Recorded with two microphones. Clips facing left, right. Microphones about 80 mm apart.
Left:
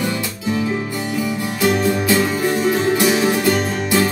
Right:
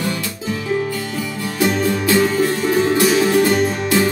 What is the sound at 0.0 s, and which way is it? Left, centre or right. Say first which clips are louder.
Music: left 1 dB; left.